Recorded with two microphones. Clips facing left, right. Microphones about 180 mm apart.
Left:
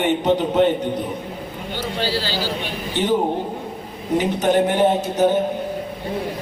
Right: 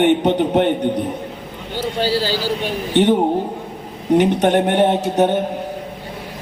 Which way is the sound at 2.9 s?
65° right (ahead or behind).